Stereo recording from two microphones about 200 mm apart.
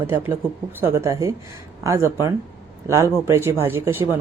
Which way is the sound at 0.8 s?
15° right (ahead or behind).